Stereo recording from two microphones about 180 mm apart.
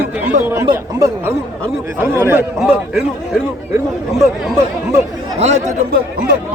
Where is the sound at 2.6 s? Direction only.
Centre (ahead or behind).